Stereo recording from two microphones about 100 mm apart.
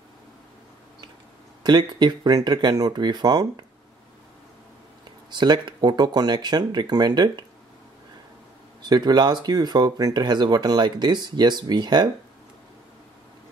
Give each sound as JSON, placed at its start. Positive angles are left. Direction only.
{"t": 1.6, "sound": "speech", "side_deg": -45}
{"t": 5.3, "sound": "speech", "side_deg": -50}
{"t": 8.8, "sound": "speech", "side_deg": -45}